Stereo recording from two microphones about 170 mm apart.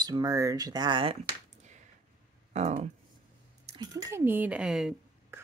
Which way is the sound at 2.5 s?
40° right (ahead or behind).